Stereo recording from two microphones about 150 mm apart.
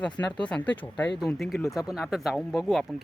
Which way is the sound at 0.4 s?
10° left (ahead or behind).